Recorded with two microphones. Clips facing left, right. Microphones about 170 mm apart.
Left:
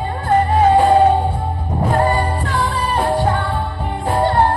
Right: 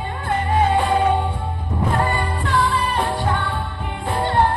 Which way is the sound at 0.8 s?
35° left (ahead or behind).